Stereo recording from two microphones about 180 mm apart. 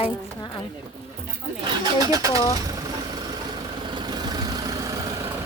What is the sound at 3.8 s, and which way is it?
Vehicle, 25° right (ahead or behind).